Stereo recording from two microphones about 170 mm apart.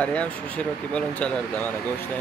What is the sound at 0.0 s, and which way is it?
Speech, 5° left (ahead or behind).